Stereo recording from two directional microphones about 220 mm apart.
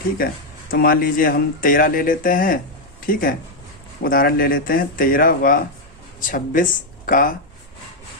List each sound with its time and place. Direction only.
0.2 s speech: 40° left (ahead or behind)